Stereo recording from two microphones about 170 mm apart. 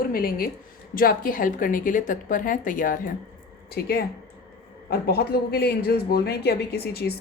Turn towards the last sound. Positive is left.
turn(degrees=70)  # may be behind; listen again after turning